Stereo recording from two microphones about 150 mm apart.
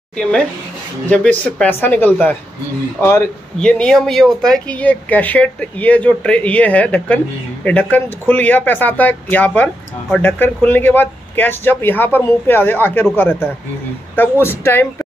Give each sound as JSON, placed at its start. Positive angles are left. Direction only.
{"t": 0.2, "sound": "speech", "side_deg": 5}
{"t": 3.5, "sound": "speech", "side_deg": 5}